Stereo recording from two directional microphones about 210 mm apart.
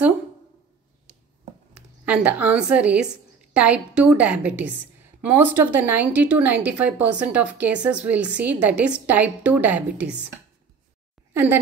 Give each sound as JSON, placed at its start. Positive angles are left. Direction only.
{"t": 1.7, "sound": "a woman's voice", "side_deg": -5}